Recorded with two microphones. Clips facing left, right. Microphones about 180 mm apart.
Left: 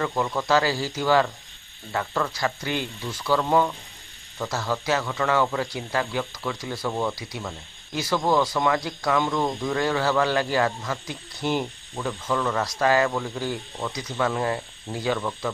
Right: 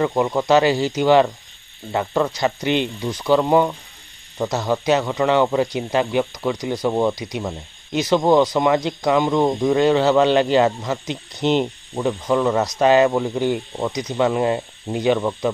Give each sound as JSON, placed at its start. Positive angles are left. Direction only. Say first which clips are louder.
{"t": 0.0, "sound": "a man's voice", "louder": "right 7 dB", "side_deg": -20}